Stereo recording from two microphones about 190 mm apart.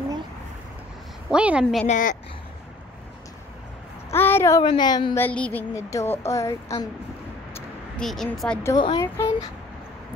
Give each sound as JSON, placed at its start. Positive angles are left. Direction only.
{"t": 1.3, "sound": "speech", "side_deg": -5}
{"t": 1.9, "sound": "a woman's voice", "side_deg": 45}
{"t": 4.1, "sound": "a child's voice", "side_deg": 10}
{"t": 5.2, "sound": "a sound", "side_deg": 10}
{"t": 8.0, "sound": "speech", "side_deg": 0}
{"t": 8.7, "sound": "a woman's voice", "side_deg": 25}
{"t": 9.0, "sound": "a sound", "side_deg": 15}